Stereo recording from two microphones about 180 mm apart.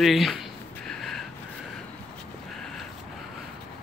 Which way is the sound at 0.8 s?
Centre (ahead or behind).